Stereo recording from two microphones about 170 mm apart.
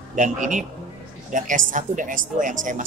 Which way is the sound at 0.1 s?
50° right (ahead or behind).